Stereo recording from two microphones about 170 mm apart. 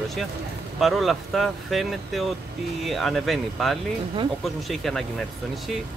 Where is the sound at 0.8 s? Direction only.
Centre (ahead or behind).